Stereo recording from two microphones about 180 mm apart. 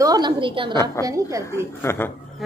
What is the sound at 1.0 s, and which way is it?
Speech, 15° right (ahead or behind).